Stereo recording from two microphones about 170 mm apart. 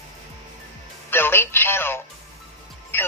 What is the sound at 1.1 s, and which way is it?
Music, 15° left (ahead or behind).